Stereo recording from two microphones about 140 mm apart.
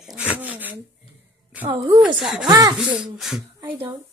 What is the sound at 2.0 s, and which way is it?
Music, centre (ahead or behind).